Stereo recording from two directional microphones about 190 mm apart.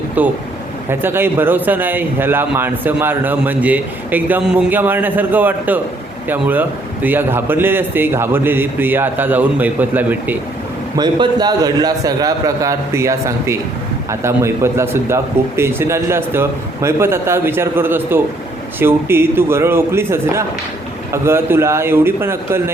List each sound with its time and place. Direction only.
0.2 s a man's voice: 10° right (ahead or behind)
10.9 s a man's voice: 20° right (ahead or behind)